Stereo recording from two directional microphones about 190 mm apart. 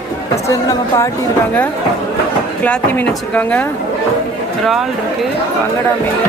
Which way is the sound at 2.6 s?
10° left (ahead or behind).